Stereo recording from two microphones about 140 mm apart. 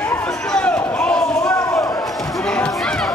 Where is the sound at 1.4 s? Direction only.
20° left (ahead or behind).